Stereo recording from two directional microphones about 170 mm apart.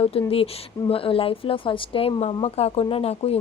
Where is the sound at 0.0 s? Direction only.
35° left (ahead or behind).